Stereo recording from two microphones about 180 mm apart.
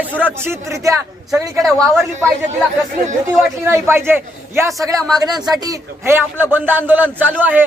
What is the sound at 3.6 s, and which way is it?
Speech, 15° right (ahead or behind).